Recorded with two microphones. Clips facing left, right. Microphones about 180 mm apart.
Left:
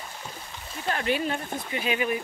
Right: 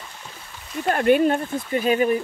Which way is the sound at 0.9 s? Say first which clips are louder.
Right 10 dB; 50° right (ahead or behind).